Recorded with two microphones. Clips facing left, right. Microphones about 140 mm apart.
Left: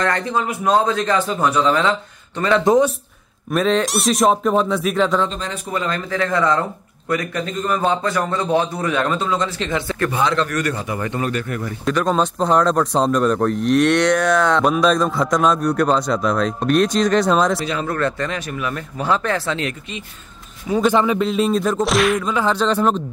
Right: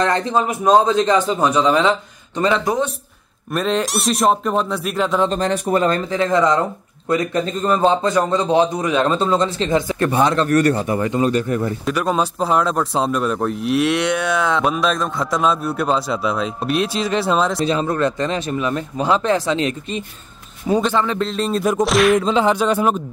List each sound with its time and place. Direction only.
0.0 s a man's voice: 20° right (ahead or behind)
3.5 s speech: centre (ahead or behind)
5.3 s speech: 45° right (ahead or behind)
6.0 s a man's voice: 20° right (ahead or behind)
10.2 s a man's voice: 40° right (ahead or behind)
11.8 s speech: 10° right (ahead or behind)
17.6 s a man's voice: 25° right (ahead or behind)
20.8 s speech: 10° left (ahead or behind)
22.2 s music: 20° right (ahead or behind)